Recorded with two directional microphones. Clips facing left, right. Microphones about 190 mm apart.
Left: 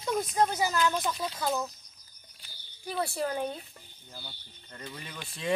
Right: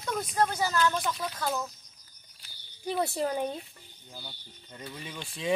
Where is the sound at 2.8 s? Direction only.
20° right (ahead or behind).